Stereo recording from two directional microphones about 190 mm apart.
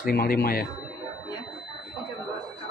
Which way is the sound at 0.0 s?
50° left (ahead or behind).